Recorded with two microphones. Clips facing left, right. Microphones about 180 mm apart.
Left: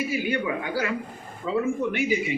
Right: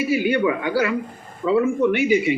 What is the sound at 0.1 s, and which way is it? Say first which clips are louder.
Speech: right 7 dB; 80° right.